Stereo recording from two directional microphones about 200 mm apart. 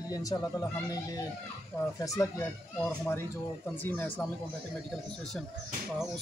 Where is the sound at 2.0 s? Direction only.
15° left (ahead or behind).